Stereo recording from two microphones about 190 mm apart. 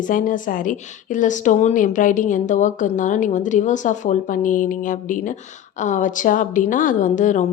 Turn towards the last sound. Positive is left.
turn(degrees=40)  # may be behind; listen again after turning